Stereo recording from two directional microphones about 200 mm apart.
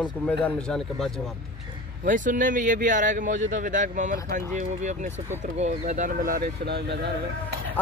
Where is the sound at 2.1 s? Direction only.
40° right (ahead or behind); by 7.1 s 55° right (ahead or behind).